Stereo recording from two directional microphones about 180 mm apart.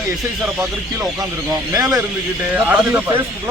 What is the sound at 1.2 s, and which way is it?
Speech, 20° right (ahead or behind).